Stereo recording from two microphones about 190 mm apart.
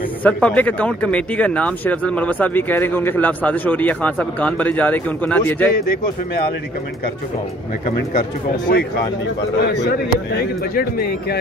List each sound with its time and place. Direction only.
0.2 s speech: 5° left (ahead or behind)
7.8 s speech: 45° left (ahead or behind)
9.6 s speech: 60° left (ahead or behind)